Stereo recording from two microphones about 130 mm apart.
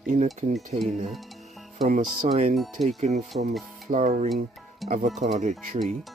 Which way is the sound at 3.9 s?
70° right (ahead or behind).